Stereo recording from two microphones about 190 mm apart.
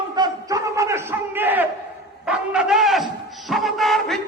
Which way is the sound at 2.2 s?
5° right (ahead or behind).